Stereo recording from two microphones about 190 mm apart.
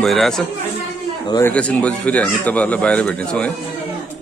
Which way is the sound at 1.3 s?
10° left (ahead or behind).